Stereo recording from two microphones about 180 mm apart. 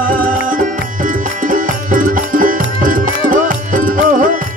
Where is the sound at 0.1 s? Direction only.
50° right (ahead or behind).